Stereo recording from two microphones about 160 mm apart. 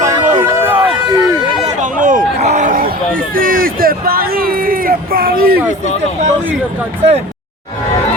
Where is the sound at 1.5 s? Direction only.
45° right (ahead or behind); by 5.5 s 65° right (ahead or behind).